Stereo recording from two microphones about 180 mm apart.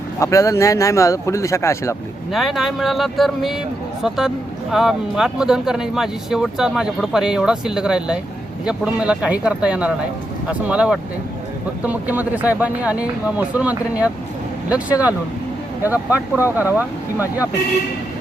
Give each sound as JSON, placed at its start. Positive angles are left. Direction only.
{"t": 0.2, "sound": "speech", "side_deg": 15}
{"t": 2.3, "sound": "speech", "side_deg": 0}
{"t": 4.7, "sound": "speech", "side_deg": 0}